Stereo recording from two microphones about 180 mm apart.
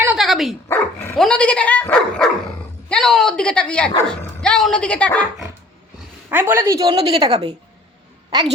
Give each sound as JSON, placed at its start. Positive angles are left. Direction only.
{"t": 0.0, "sound": "dog", "side_deg": -5}
{"t": 1.1, "sound": "speech", "side_deg": 5}
{"t": 6.3, "sound": "a woman's voice", "side_deg": -10}
{"t": 7.3, "sound": "speech", "side_deg": -35}